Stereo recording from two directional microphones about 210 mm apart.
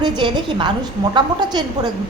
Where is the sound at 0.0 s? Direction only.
20° right (ahead or behind).